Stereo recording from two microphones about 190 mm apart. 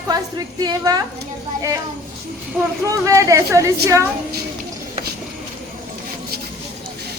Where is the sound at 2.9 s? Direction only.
15° right (ahead or behind).